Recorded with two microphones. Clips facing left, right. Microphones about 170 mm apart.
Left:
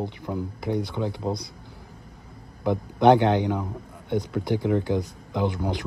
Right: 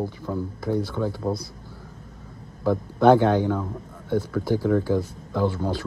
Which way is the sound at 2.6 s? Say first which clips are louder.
Right 1 dB; 20° left (ahead or behind).